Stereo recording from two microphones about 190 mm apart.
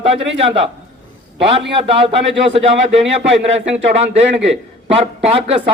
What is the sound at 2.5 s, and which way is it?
Speech, 30° right (ahead or behind).